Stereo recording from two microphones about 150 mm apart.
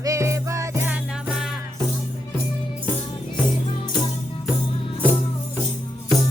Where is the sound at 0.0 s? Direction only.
20° right (ahead or behind).